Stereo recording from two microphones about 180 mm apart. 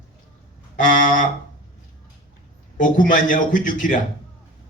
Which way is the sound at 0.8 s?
45° left (ahead or behind).